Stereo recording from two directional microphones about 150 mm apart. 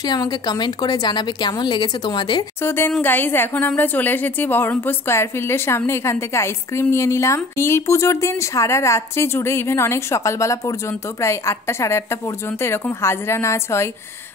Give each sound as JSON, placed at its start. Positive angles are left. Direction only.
{"t": 0.0, "sound": "a woman's voice", "side_deg": 25}
{"t": 2.6, "sound": "a woman's voice", "side_deg": 15}